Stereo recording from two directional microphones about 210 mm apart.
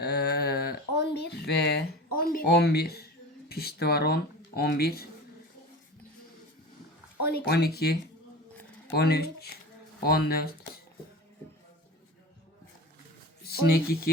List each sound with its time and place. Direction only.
0.0 s a sound: 50° left (ahead or behind)
3.5 s speech: 50° left (ahead or behind)
7.3 s speech: 50° left (ahead or behind)
13.4 s speech: 45° left (ahead or behind)